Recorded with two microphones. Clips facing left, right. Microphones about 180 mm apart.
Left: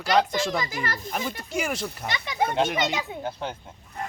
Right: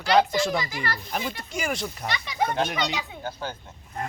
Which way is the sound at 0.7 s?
45° left (ahead or behind).